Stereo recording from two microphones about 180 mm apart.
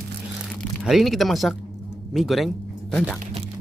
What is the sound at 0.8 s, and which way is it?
Speech, centre (ahead or behind).